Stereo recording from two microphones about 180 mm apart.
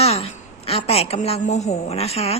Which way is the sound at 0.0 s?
35° left (ahead or behind).